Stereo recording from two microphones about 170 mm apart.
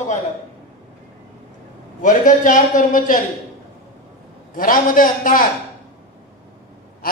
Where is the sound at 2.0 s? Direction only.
50° left (ahead or behind).